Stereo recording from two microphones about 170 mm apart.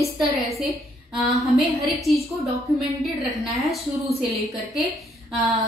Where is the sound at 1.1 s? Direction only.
Centre (ahead or behind).